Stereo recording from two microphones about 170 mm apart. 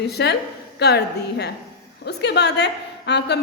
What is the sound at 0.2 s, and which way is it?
A woman's voice, 80° left.